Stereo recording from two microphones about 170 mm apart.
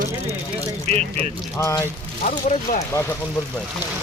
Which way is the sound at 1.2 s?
15° left (ahead or behind).